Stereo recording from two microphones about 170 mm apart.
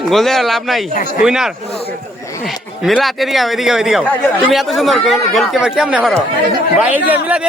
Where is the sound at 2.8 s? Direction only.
Centre (ahead or behind).